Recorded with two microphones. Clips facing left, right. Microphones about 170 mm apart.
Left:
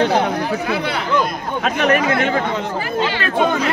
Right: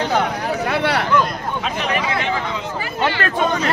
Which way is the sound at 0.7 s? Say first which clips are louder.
Right 2 dB; 70° right (ahead or behind).